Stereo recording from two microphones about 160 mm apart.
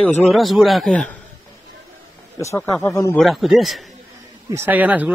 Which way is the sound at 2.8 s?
20° left (ahead or behind).